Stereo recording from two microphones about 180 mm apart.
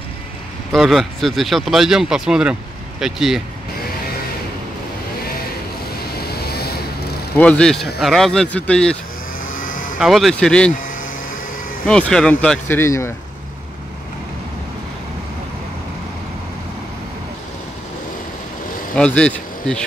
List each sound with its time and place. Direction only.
0.7 s speech: centre (ahead or behind)
6.1 s vehicle: 60° left (ahead or behind)
7.3 s speech: 5° left (ahead or behind)
9.5 s vehicle: 50° left (ahead or behind)
9.9 s speech: centre (ahead or behind)
11.8 s speech: 5° left (ahead or behind)
18.9 s speech: 5° left (ahead or behind)